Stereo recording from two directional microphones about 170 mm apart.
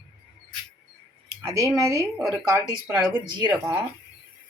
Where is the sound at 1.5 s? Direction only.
20° right (ahead or behind).